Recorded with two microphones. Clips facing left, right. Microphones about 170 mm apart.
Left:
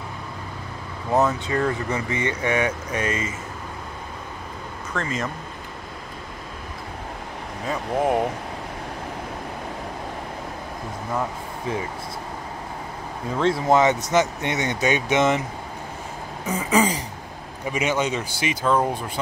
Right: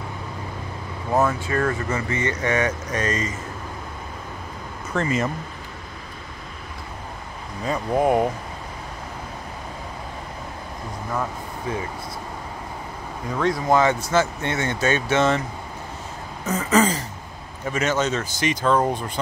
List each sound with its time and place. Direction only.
1.2 s speech: 15° left (ahead or behind)
4.9 s speech: 10° right (ahead or behind)
7.6 s speech: centre (ahead or behind)
13.3 s speech: 25° left (ahead or behind)
16.4 s speech: 10° left (ahead or behind)